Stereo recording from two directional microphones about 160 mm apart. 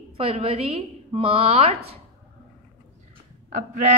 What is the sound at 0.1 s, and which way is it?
A woman's voice, 35° right (ahead or behind).